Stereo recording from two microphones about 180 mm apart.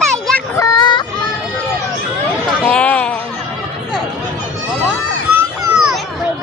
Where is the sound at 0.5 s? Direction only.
20° left (ahead or behind).